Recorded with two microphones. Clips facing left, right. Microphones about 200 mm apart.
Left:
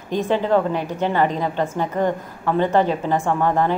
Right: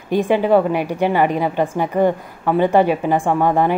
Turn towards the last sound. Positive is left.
turn(degrees=-10)  # may be behind; listen again after turning